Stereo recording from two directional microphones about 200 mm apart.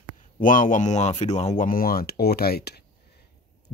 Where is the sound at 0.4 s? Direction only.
40° left (ahead or behind).